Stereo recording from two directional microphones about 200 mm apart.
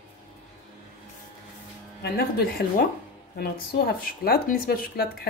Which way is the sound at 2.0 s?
50° left (ahead or behind).